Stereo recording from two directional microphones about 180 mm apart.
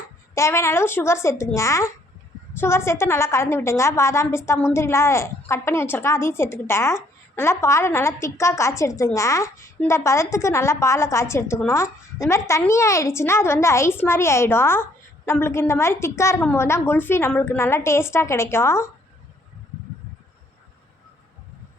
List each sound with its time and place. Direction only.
0.3 s a woman's voice: 15° left (ahead or behind)